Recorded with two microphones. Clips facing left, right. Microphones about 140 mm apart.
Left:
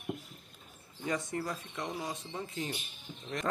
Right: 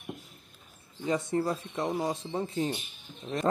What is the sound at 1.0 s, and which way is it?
A man's voice, 30° right (ahead or behind).